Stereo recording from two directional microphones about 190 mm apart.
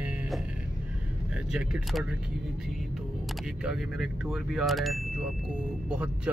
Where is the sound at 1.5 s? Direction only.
5° right (ahead or behind).